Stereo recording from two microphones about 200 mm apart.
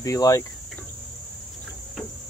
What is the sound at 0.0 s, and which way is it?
Speech, 15° left (ahead or behind).